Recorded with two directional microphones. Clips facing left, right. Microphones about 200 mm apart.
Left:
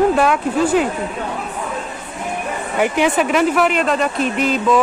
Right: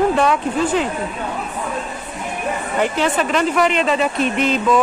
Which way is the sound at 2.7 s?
15° left (ahead or behind).